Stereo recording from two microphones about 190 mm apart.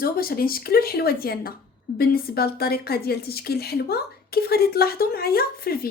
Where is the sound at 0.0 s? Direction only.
50° left (ahead or behind).